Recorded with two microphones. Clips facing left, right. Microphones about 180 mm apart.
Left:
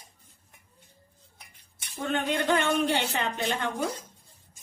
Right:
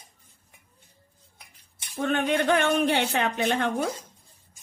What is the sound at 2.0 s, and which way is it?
Speech, 60° right (ahead or behind).